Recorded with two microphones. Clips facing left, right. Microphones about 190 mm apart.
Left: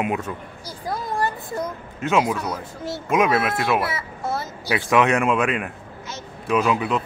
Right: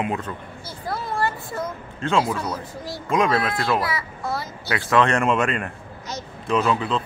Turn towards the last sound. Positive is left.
turn(degrees=10)  # may be behind; listen again after turning